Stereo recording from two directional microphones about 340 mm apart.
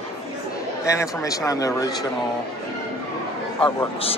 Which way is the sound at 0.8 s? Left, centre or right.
Centre.